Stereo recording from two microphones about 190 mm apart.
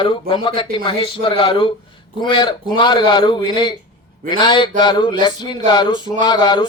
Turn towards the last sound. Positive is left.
turn(degrees=25)  # may be behind; listen again after turning